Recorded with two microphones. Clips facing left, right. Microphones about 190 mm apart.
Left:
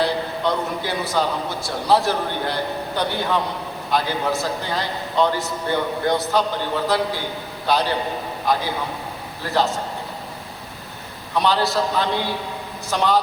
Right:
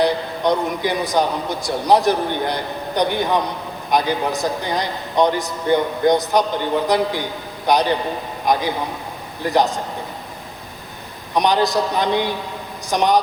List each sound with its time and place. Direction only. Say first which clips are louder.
0.0 s a man's voice: right 3 dB; 15° right (ahead or behind)
11.3 s a man's voice: right 3 dB; 15° right (ahead or behind)